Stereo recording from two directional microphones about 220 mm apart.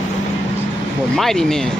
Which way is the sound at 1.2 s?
Centre (ahead or behind).